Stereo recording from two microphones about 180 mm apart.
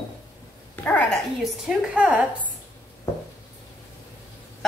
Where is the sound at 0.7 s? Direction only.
10° left (ahead or behind).